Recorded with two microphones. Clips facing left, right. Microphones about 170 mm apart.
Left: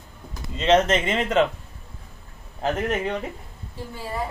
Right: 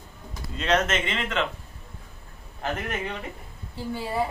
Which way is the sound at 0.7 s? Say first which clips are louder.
Left 6 dB; 30° left (ahead or behind).